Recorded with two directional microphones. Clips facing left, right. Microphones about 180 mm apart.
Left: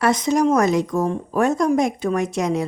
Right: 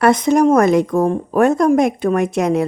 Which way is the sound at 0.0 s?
55° right (ahead or behind).